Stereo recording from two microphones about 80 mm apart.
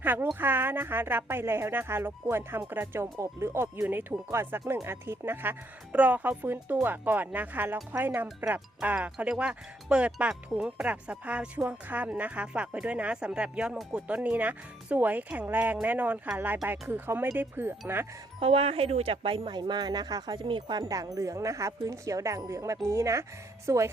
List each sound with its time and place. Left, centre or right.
0.0 s speech: right
19.2 s speech: right
20.8 s speech: right